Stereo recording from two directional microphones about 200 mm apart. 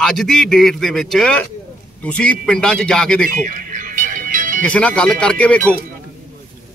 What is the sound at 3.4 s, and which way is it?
Music, 40° right (ahead or behind).